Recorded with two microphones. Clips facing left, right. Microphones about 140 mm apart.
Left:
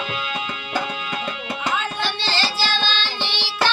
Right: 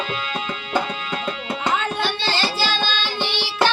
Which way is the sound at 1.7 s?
55° right (ahead or behind).